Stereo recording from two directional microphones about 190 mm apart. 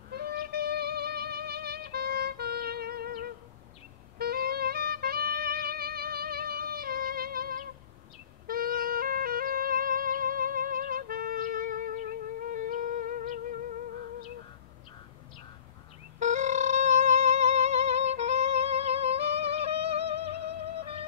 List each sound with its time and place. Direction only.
0.1 s music: 50° right (ahead or behind)
16.2 s music: 40° right (ahead or behind)
20.0 s music: 60° right (ahead or behind)